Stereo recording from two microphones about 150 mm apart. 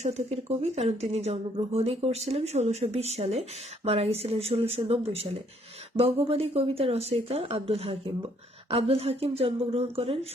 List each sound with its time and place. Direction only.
0.0 s speech: 45° right (ahead or behind)